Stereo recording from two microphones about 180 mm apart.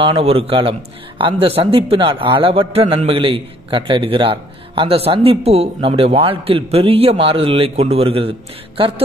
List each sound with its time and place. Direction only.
0.0 s a man's voice: 30° right (ahead or behind)